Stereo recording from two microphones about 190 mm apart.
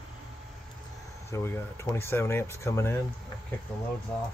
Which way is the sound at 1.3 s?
15° left (ahead or behind).